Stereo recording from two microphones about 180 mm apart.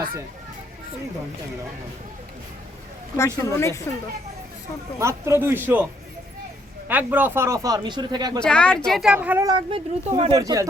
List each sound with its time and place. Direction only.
3.2 s speech: 15° left (ahead or behind)
4.9 s speech: 15° right (ahead or behind)
6.8 s speech: 10° right (ahead or behind)
8.4 s speech: 5° left (ahead or behind); by 9.5 s 10° right (ahead or behind)
9.5 s speech: 30° right (ahead or behind)